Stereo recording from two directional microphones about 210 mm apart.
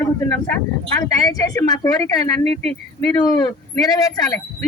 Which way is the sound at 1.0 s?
15° left (ahead or behind).